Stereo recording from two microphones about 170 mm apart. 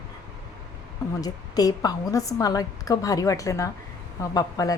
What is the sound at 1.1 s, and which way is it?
A woman's voice, 20° left (ahead or behind).